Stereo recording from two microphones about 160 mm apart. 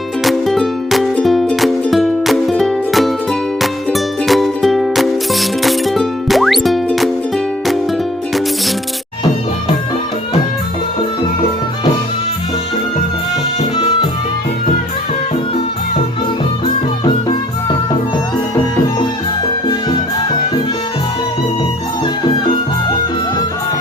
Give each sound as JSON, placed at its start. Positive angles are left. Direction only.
{"t": 0.3, "sound": "music", "side_deg": 0}
{"t": 13.7, "sound": "music", "side_deg": 30}